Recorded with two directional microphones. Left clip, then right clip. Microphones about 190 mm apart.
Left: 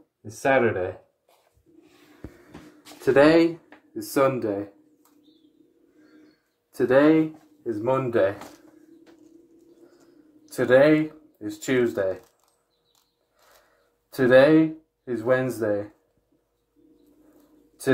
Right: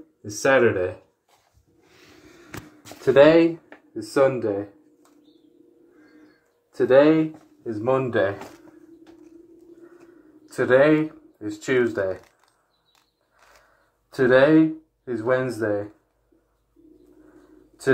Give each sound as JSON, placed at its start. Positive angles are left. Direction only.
{"t": 0.2, "sound": "speech", "side_deg": 5}
{"t": 3.0, "sound": "speech", "side_deg": 5}
{"t": 6.7, "sound": "speech", "side_deg": 15}
{"t": 10.5, "sound": "speech", "side_deg": 10}
{"t": 10.9, "sound": "speech", "side_deg": 0}
{"t": 11.3, "sound": "speech", "side_deg": 15}
{"t": 14.1, "sound": "speech", "side_deg": 10}